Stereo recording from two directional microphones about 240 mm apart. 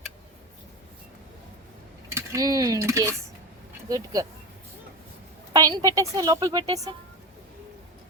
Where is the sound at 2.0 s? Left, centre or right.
Centre.